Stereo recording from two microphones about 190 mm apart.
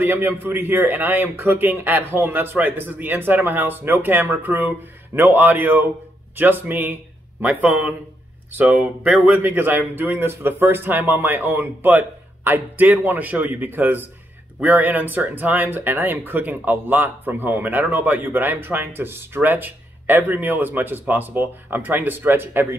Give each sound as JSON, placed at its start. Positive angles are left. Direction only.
{"t": 0.0, "sound": "speech", "side_deg": -10}